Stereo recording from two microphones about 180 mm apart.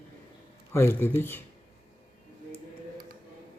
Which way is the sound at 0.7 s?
15° left (ahead or behind).